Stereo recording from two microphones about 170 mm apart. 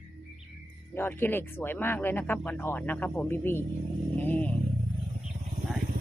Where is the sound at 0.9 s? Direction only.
10° left (ahead or behind).